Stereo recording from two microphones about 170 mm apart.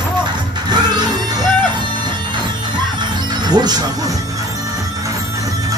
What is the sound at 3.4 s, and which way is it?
Speech, 25° right (ahead or behind).